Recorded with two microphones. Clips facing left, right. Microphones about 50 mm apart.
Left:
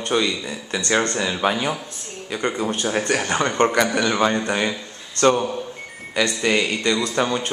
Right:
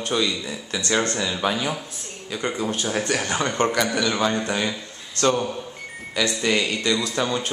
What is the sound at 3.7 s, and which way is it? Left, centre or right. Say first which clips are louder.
A man's voice: left 3 dB; centre.